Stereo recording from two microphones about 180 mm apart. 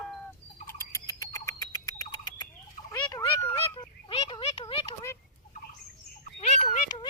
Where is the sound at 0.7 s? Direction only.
15° left (ahead or behind).